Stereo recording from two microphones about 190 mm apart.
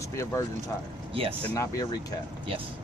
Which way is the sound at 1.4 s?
15° left (ahead or behind).